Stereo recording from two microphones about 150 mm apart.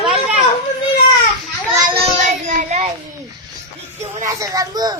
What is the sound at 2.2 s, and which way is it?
Child singing, 55° right (ahead or behind).